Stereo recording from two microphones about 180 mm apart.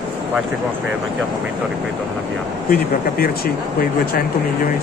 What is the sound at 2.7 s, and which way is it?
Speech, 55° left (ahead or behind).